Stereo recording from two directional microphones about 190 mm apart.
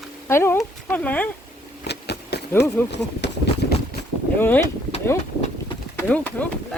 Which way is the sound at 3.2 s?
65° left (ahead or behind).